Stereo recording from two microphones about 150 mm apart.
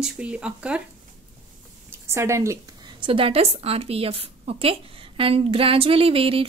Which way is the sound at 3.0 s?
35° right (ahead or behind).